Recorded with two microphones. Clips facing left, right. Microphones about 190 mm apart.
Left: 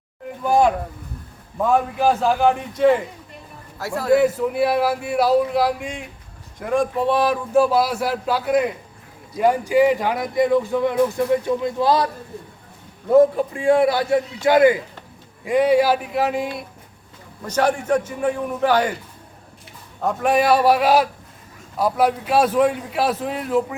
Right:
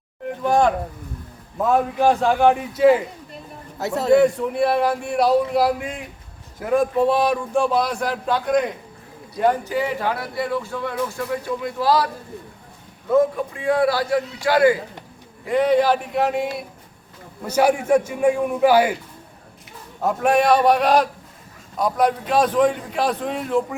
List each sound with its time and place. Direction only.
0.4 s speech: 5° left (ahead or behind)
3.8 s speech: 20° right (ahead or behind)
4.1 s speech: 5° left (ahead or behind); by 12.0 s 25° left (ahead or behind)
13.1 s a man's voice: 30° left (ahead or behind); by 18.9 s 10° right (ahead or behind)
20.0 s speech: centre (ahead or behind)